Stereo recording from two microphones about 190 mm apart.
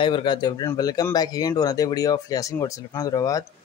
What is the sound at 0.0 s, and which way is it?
Speech, 25° left (ahead or behind).